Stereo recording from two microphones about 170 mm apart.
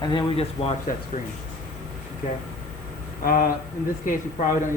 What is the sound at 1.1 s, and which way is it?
Speech, 50° left (ahead or behind).